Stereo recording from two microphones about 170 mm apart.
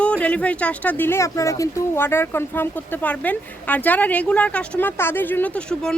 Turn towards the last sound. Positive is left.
turn(degrees=5)  # may be behind; listen again after turning